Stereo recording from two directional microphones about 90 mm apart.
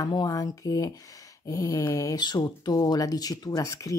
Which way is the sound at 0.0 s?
45° left (ahead or behind).